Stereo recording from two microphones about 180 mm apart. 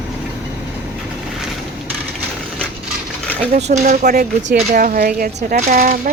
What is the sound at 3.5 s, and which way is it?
Speech, 40° right (ahead or behind).